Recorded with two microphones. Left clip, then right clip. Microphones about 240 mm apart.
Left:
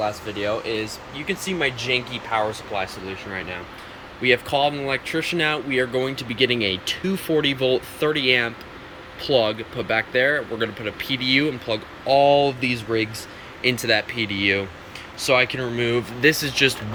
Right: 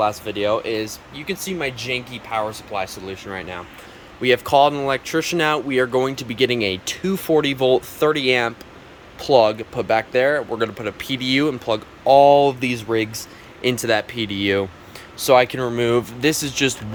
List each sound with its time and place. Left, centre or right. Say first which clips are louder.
0.3 s speech: right 4 dB; centre
4.2 s speech: right 4 dB; centre